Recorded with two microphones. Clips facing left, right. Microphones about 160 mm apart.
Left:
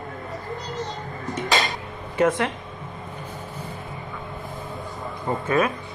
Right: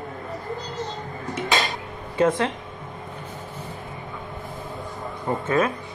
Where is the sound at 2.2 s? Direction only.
25° right (ahead or behind).